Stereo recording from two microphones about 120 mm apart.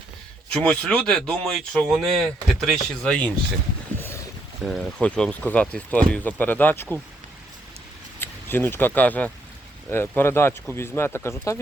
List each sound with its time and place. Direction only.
0.5 s speech: 10° left (ahead or behind)
3.9 s boat: 20° left (ahead or behind)
4.6 s speech: centre (ahead or behind); by 6.8 s 15° left (ahead or behind)
8.2 s speech: 15° left (ahead or behind)